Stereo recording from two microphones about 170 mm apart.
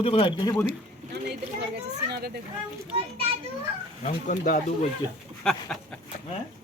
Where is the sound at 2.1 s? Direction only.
65° right (ahead or behind).